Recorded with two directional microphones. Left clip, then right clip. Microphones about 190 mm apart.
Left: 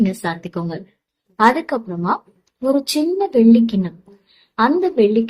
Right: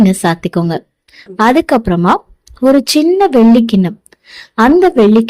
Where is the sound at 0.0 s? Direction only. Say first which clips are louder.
Right 9 dB; 45° right (ahead or behind).